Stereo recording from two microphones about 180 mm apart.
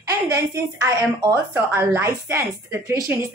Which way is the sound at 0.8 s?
15° right (ahead or behind).